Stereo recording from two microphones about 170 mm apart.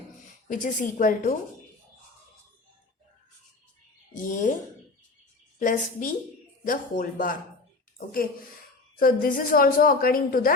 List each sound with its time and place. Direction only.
0.4 s a woman's voice: 50° left (ahead or behind)
4.1 s speech: 50° left (ahead or behind)
5.5 s a woman's voice: 50° left (ahead or behind)